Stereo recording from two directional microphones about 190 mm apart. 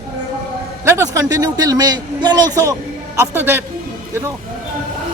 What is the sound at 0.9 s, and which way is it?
A man's voice, 15° right (ahead or behind).